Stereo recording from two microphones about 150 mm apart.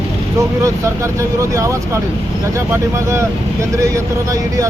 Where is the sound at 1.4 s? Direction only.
20° right (ahead or behind).